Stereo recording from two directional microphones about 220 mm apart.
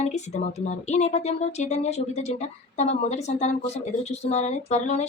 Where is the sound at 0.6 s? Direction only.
30° left (ahead or behind).